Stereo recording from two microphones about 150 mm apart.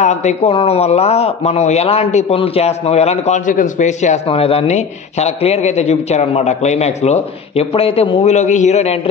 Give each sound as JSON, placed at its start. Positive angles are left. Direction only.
{"t": 0.0, "sound": "speech", "side_deg": 50}